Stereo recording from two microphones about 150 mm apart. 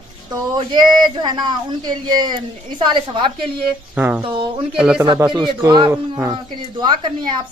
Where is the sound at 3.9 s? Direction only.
10° right (ahead or behind).